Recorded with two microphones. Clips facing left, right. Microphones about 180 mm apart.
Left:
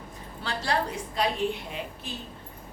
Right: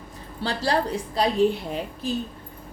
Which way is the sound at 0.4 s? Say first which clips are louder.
Right 5 dB; 35° right (ahead or behind).